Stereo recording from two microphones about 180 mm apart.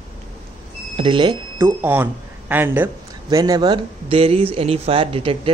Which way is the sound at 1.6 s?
10° right (ahead or behind).